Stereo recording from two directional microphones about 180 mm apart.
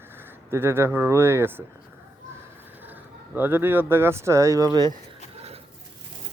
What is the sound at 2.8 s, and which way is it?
Speech, 10° right (ahead or behind).